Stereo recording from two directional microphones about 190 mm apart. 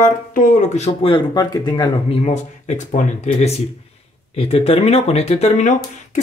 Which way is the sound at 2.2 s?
40° left (ahead or behind).